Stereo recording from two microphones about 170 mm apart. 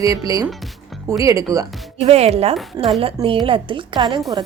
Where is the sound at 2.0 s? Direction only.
40° right (ahead or behind).